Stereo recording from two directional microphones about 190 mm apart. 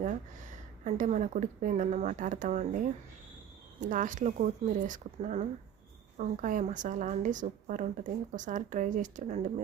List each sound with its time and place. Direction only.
0.0 s speech: 40° right (ahead or behind)
3.8 s a woman's voice: 45° right (ahead or behind)